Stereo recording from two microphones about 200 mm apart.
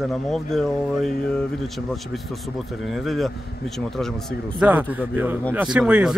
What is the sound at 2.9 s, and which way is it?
A man's voice, centre (ahead or behind).